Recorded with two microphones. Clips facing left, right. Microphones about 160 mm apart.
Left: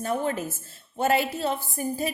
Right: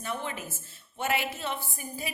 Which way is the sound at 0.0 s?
45° left (ahead or behind).